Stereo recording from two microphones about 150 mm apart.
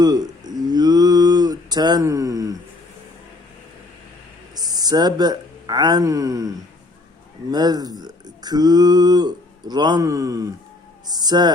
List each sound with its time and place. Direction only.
0.0 s a sound: 25° right (ahead or behind)
4.5 s speech: 25° right (ahead or behind)
7.5 s speech: 25° right (ahead or behind)